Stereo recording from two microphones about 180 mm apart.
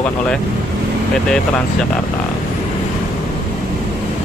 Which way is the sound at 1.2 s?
5° left (ahead or behind).